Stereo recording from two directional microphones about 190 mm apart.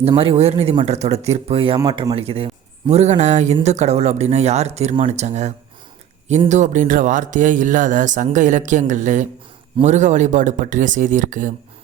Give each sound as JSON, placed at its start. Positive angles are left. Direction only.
{"t": 0.1, "sound": "speech", "side_deg": -30}